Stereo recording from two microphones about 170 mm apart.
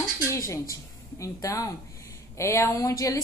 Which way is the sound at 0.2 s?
15° left (ahead or behind).